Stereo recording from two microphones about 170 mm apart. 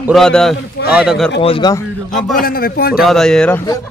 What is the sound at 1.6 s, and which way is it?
Speech, 25° left (ahead or behind).